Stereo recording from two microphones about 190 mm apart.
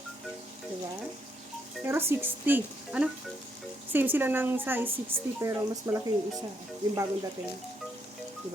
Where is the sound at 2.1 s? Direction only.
10° right (ahead or behind).